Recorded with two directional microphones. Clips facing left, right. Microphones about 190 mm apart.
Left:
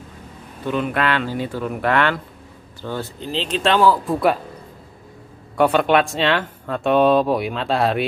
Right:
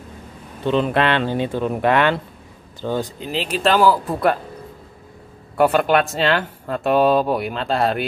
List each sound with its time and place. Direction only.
0.7 s speech: 25° right (ahead or behind); by 4.4 s centre (ahead or behind)
5.6 s speech: centre (ahead or behind)